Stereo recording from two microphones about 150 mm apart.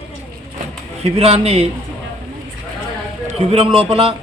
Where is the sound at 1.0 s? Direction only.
40° right (ahead or behind).